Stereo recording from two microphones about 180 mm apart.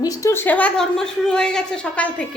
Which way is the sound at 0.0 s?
20° left (ahead or behind).